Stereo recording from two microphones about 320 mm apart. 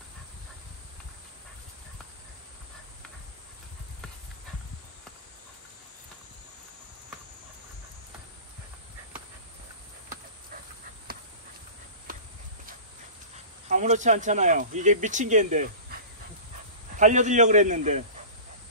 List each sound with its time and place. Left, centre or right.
13.7 s speech: right